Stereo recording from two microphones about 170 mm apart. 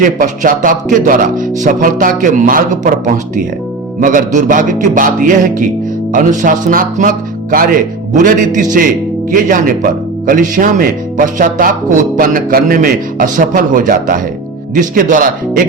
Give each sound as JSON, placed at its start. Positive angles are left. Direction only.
{"t": 0.0, "sound": "speech", "side_deg": -55}
{"t": 4.0, "sound": "speech", "side_deg": -50}